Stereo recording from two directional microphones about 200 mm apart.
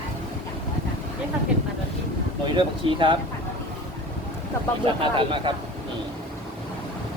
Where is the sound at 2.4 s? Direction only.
25° right (ahead or behind).